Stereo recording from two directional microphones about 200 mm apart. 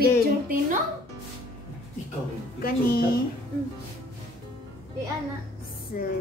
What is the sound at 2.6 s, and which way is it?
Speech, 45° left (ahead or behind).